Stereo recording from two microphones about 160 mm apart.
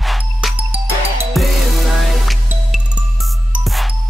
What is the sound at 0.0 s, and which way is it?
Music, centre (ahead or behind).